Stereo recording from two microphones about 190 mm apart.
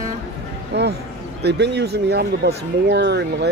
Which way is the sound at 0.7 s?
60° right (ahead or behind).